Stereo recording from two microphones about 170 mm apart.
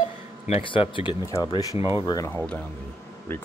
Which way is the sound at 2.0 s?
20° left (ahead or behind).